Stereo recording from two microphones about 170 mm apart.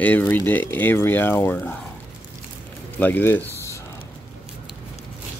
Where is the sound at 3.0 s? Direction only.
10° left (ahead or behind).